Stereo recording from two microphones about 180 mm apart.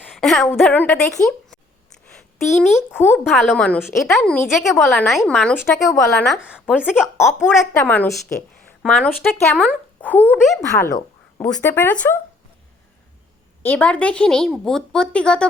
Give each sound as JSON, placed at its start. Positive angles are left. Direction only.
{"t": 0.0, "sound": "a woman's voice", "side_deg": 0}
{"t": 5.8, "sound": "speech", "side_deg": 15}
{"t": 6.3, "sound": "a woman's voice", "side_deg": -5}
{"t": 7.9, "sound": "speech", "side_deg": 10}
{"t": 13.6, "sound": "a woman's voice", "side_deg": 10}